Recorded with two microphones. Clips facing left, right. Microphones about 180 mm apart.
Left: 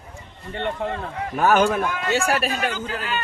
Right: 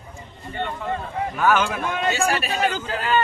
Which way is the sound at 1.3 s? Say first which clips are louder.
Left 3 dB; 40° left (ahead or behind).